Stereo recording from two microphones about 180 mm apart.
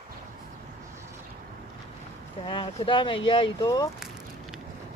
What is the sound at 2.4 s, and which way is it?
Speech, 30° left (ahead or behind).